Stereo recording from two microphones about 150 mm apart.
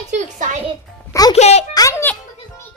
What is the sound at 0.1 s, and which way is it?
Music, 55° right (ahead or behind).